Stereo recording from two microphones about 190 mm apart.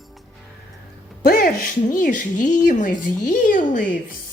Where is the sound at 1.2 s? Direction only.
50° left (ahead or behind).